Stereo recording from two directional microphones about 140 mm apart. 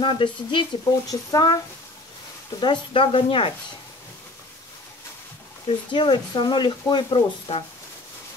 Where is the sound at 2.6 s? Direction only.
35° left (ahead or behind).